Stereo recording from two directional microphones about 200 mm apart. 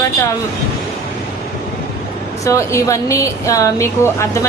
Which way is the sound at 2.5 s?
15° left (ahead or behind).